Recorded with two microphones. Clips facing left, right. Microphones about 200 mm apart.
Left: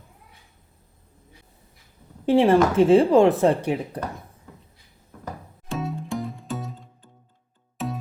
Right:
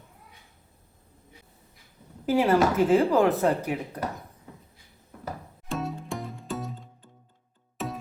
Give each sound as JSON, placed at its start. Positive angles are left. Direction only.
{"t": 2.2, "sound": "speech", "side_deg": 30}
{"t": 5.7, "sound": "music", "side_deg": 0}
{"t": 7.8, "sound": "music", "side_deg": 0}